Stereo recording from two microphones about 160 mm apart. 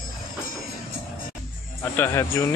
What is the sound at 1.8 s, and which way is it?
Speech, 15° left (ahead or behind).